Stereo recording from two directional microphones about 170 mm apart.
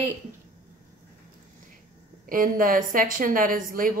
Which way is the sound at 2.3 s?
55° right (ahead or behind).